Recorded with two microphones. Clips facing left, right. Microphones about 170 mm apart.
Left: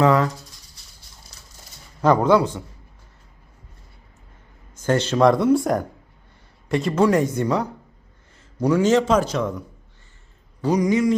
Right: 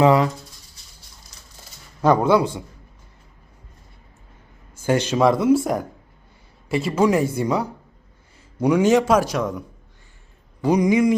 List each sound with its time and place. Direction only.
0.0 s a man's voice: 15° right (ahead or behind)
2.0 s a man's voice: 10° right (ahead or behind)
4.7 s a man's voice: 10° right (ahead or behind)